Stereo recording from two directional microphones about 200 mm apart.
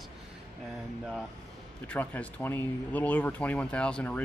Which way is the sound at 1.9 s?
5° left (ahead or behind).